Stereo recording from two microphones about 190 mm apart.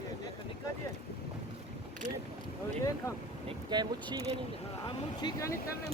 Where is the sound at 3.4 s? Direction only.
25° right (ahead or behind).